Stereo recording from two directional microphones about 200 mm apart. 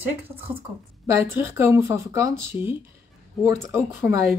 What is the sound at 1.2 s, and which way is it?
Speech, 10° right (ahead or behind).